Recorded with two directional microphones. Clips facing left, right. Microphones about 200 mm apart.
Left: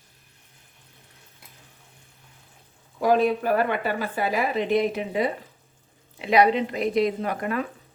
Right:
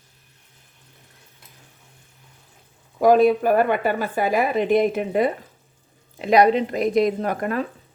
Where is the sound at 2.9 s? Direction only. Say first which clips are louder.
Right 5 dB; 50° right (ahead or behind).